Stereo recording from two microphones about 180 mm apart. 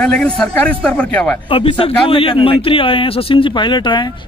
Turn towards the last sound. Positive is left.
turn(degrees=25)  # may be behind; listen again after turning